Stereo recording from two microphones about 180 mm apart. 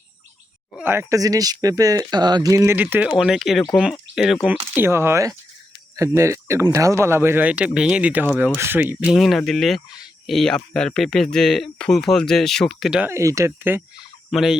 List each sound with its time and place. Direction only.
0.8 s speech: 15° right (ahead or behind)
4.7 s speech: 10° right (ahead or behind)
14.3 s a sound: centre (ahead or behind)